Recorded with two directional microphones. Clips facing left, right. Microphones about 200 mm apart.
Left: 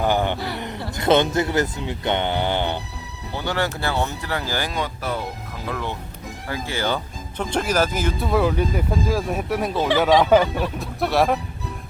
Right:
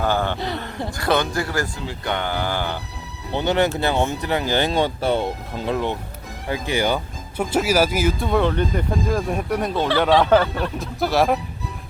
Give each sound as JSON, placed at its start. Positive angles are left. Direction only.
{"t": 0.0, "sound": "a sound", "side_deg": 15}
{"t": 0.3, "sound": "speech", "side_deg": -20}
{"t": 0.9, "sound": "speech", "side_deg": 20}
{"t": 3.3, "sound": "speech", "side_deg": -20}
{"t": 8.2, "sound": "speech", "side_deg": 5}
{"t": 10.8, "sound": "speech", "side_deg": 0}